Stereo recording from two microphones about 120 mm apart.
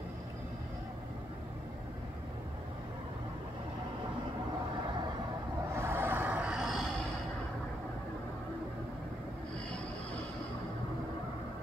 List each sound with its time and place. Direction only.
5.8 s vehicle: 20° right (ahead or behind); by 6.9 s centre (ahead or behind)